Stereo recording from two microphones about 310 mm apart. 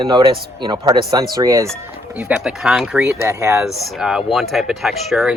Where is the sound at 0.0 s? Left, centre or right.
Centre.